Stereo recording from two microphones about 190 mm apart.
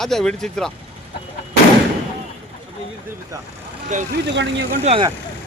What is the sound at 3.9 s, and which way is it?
Speech, 40° right (ahead or behind).